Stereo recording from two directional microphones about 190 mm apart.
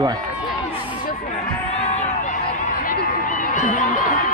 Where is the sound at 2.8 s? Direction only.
45° left (ahead or behind).